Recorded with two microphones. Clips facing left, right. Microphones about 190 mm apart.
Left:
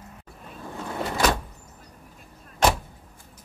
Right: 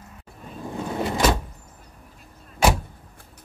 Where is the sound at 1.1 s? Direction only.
20° right (ahead or behind).